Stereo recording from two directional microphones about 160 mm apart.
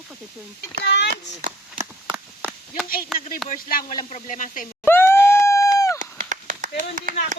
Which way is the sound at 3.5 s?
60° left (ahead or behind).